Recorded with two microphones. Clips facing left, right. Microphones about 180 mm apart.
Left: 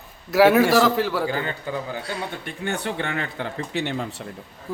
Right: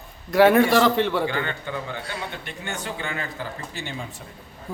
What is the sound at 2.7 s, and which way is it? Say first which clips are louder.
Speech: left 5 dB; 60° left (ahead or behind).